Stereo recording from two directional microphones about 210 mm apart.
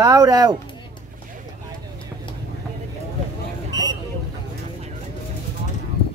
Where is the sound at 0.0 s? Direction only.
15° right (ahead or behind).